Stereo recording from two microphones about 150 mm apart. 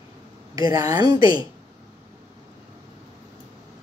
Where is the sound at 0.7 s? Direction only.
25° right (ahead or behind).